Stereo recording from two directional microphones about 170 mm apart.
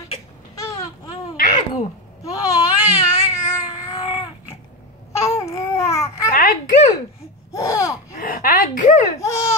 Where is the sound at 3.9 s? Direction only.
25° left (ahead or behind).